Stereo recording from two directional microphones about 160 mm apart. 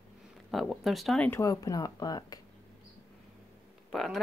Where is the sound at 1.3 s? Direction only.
20° left (ahead or behind).